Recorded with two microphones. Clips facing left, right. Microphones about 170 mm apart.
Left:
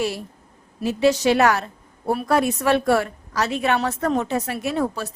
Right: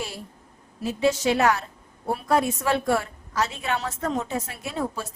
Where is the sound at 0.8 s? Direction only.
75° left (ahead or behind).